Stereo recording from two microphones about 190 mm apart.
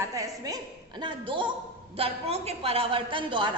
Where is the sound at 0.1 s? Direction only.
20° right (ahead or behind).